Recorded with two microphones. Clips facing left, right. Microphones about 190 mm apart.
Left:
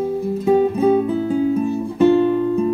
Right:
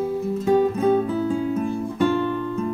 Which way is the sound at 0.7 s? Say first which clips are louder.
Left 4 dB; 15° left (ahead or behind).